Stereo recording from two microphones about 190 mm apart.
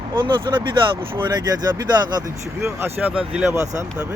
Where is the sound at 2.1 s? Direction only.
15° right (ahead or behind).